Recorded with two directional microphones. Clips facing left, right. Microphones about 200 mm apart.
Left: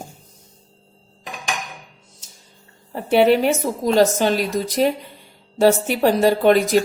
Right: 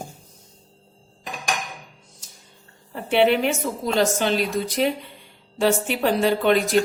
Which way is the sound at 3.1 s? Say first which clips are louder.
Left 4 dB; 40° left (ahead or behind).